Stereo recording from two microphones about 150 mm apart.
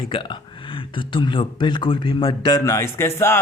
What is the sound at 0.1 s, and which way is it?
A man's voice, 35° left (ahead or behind).